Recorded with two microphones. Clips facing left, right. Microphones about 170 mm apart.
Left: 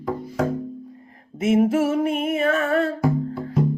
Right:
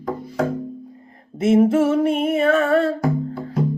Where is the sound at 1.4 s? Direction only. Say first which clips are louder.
Right 3 dB; 35° right (ahead or behind).